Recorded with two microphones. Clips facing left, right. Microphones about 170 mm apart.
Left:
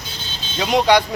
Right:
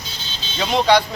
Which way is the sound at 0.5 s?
10° left (ahead or behind).